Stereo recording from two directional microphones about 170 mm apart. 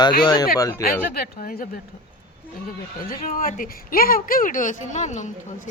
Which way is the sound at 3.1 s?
55° left (ahead or behind).